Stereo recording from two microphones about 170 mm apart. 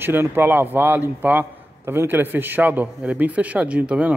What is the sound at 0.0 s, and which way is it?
A man's voice, 10° right (ahead or behind).